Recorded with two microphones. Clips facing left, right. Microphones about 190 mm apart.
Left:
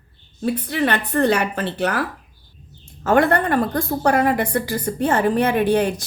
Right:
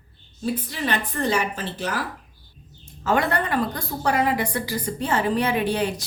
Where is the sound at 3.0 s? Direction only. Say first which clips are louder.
Left 6 dB; 50° left (ahead or behind).